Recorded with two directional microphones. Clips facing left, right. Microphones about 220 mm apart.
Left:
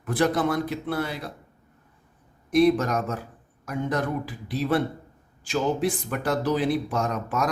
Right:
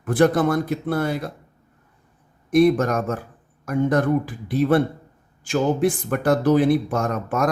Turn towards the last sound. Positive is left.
turn(degrees=-50)  # may be behind; listen again after turning